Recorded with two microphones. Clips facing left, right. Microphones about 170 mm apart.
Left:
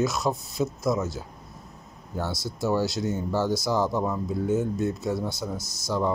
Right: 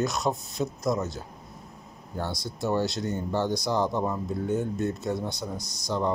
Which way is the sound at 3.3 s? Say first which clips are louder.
Left 1 dB; 15° right (ahead or behind).